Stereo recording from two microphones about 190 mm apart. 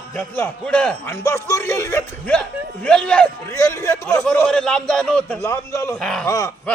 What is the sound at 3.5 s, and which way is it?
Speech, 15° left (ahead or behind).